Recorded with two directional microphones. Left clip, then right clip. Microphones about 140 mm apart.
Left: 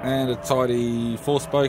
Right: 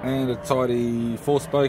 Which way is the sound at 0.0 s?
45° left (ahead or behind).